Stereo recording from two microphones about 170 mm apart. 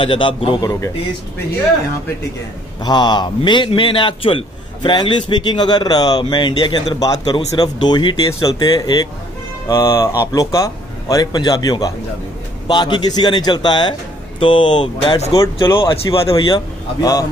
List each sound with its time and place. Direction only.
0.0 s a man's voice: 30° left (ahead or behind)
2.8 s a man's voice: 25° left (ahead or behind)